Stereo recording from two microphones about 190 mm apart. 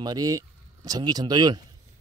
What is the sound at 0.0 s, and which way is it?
Speech, 20° right (ahead or behind).